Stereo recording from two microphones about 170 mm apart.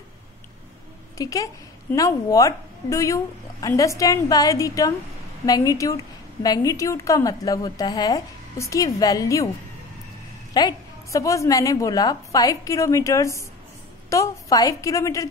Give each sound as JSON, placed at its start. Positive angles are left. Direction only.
{"t": 1.1, "sound": "a woman's voice", "side_deg": 20}
{"t": 10.5, "sound": "a woman's voice", "side_deg": 25}